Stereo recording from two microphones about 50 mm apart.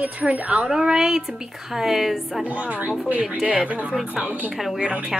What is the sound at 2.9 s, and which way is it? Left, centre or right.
Speech, right.